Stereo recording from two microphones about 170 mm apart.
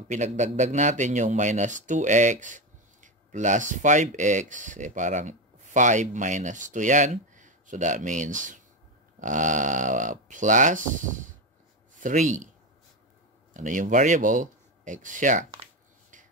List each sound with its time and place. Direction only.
0.1 s a man's voice: 45° right (ahead or behind)
13.5 s speech: 50° right (ahead or behind)